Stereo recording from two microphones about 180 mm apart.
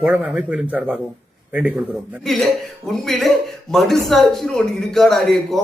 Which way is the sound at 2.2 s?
Centre (ahead or behind).